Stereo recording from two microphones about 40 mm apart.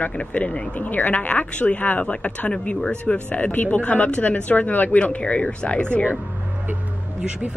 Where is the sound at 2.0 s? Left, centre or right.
Left.